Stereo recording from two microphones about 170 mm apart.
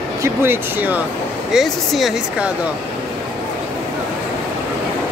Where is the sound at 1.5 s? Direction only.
Centre (ahead or behind).